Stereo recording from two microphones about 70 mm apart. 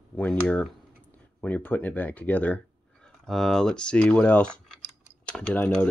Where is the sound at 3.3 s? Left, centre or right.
Centre.